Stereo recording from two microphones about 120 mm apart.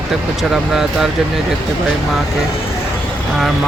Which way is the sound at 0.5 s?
5° right (ahead or behind).